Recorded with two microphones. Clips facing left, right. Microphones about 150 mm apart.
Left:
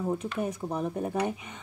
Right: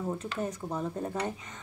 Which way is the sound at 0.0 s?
15° left (ahead or behind).